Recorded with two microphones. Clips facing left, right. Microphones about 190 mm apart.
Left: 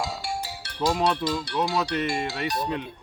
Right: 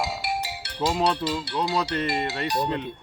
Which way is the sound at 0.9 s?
15° right (ahead or behind).